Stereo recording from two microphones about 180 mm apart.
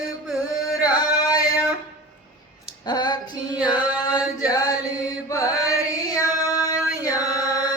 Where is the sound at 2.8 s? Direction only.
25° left (ahead or behind).